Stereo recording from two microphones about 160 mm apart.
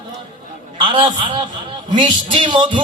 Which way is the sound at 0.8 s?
30° right (ahead or behind).